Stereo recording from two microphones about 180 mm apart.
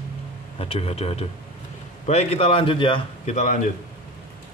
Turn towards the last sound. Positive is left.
turn(degrees=45)  # may be behind; listen again after turning